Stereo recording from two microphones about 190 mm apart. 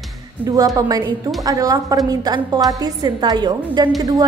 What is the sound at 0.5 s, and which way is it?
A woman's voice, 20° right (ahead or behind).